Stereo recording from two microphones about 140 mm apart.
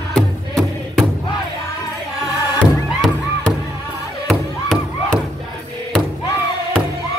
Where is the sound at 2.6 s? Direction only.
5° left (ahead or behind).